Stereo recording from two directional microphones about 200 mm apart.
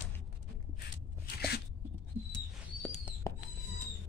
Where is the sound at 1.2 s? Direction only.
50° left (ahead or behind).